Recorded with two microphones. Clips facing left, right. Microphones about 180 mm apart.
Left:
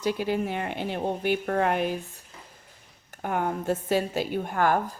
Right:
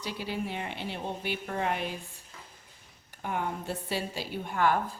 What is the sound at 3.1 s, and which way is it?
A woman's voice, 50° left (ahead or behind).